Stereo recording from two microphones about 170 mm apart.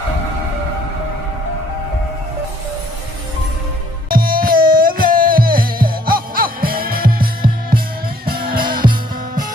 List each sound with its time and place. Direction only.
4.1 s music: 60° right (ahead or behind)
8.6 s music: 25° right (ahead or behind)